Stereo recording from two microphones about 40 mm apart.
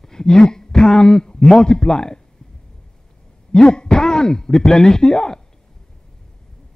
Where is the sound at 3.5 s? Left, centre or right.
Centre.